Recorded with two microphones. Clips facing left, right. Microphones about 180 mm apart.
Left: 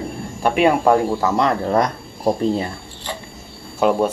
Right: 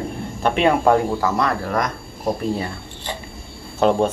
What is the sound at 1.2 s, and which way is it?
Speech, 20° left (ahead or behind).